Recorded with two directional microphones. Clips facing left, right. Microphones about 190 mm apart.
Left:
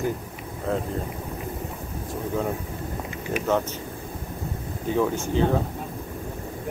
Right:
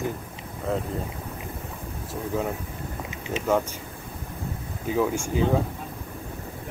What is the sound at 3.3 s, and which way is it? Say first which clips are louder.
Speech: left 2 dB; 25° right (ahead or behind).